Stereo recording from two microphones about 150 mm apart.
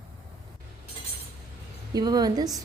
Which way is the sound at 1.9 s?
25° right (ahead or behind).